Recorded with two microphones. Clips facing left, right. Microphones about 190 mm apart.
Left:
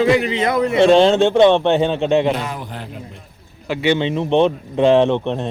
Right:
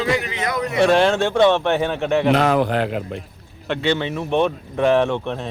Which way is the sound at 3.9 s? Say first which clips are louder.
Left 5 dB; 20° left (ahead or behind).